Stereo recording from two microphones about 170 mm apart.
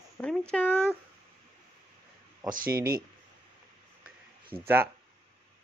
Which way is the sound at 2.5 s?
60° right (ahead or behind).